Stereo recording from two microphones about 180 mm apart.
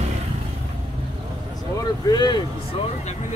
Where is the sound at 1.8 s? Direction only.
25° left (ahead or behind).